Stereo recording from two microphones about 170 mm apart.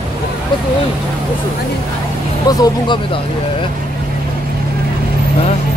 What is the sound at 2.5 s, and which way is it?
Speech, 20° left (ahead or behind).